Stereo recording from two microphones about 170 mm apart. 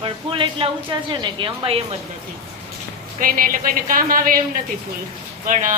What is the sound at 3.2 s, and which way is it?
A woman's voice, 55° right (ahead or behind).